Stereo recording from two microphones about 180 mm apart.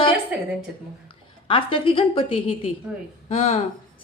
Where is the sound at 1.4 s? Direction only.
30° left (ahead or behind).